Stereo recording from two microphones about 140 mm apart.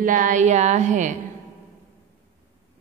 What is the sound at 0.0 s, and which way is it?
Music, 65° right (ahead or behind).